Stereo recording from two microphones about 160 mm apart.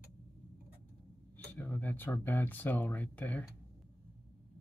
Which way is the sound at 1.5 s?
10° left (ahead or behind).